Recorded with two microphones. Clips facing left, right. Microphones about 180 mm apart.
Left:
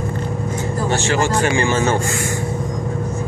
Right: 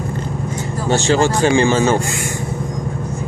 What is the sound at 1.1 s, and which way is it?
Speech, 25° right (ahead or behind).